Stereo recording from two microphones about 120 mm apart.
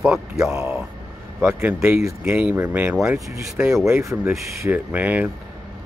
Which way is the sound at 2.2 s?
20° right (ahead or behind).